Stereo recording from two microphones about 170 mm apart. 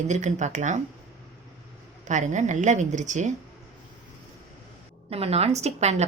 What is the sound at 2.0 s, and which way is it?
A woman's voice, 45° right (ahead or behind).